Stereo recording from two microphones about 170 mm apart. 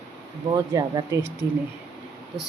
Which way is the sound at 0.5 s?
25° right (ahead or behind).